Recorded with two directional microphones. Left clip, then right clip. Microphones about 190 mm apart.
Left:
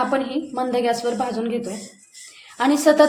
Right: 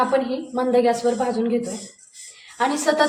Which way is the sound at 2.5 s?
40° left (ahead or behind).